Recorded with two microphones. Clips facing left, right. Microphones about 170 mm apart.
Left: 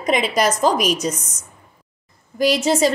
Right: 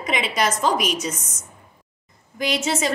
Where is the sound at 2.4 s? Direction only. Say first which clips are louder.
Left 7 dB; 35° left (ahead or behind).